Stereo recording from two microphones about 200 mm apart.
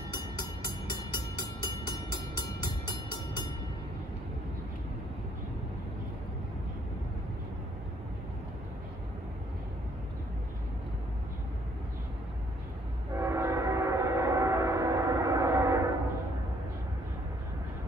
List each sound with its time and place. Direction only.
0.1 s music: 20° left (ahead or behind)
13.1 s train: 15° right (ahead or behind)